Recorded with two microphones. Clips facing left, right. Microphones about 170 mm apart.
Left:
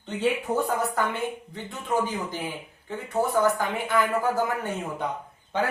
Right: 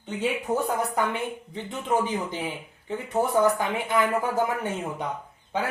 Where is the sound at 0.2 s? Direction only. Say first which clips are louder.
Left 1 dB; 15° right (ahead or behind).